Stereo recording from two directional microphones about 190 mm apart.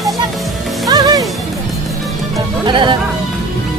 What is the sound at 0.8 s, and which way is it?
Music, 20° right (ahead or behind).